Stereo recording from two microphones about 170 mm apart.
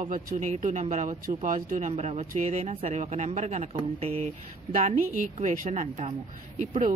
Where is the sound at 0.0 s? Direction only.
50° right (ahead or behind).